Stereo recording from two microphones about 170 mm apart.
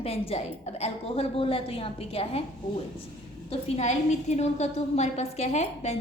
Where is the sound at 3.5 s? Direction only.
40° left (ahead or behind).